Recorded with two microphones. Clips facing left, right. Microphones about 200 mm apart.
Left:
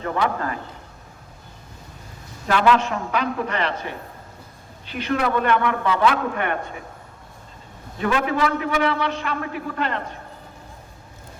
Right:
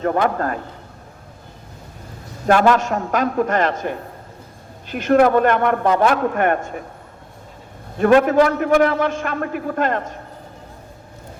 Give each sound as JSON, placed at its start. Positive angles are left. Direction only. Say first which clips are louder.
{"t": 0.0, "sound": "a man's voice", "louder": "right 5 dB", "side_deg": -45}
{"t": 2.5, "sound": "a man's voice", "louder": "right 4 dB", "side_deg": -45}
{"t": 7.9, "sound": "a man's voice", "louder": "right 9 dB", "side_deg": -50}